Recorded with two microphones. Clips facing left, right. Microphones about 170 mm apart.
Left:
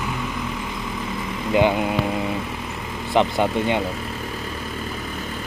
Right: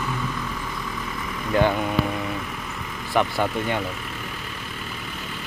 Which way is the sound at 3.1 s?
20° left (ahead or behind).